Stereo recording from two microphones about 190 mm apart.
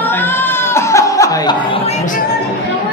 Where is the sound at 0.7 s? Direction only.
15° left (ahead or behind).